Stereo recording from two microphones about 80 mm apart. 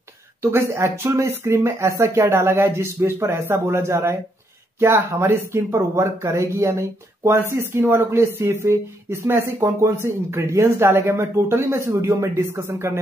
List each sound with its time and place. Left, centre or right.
0.4 s speech: right